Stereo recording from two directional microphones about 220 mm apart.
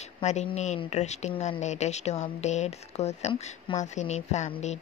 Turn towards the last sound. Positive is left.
turn(degrees=30)  # may be behind; listen again after turning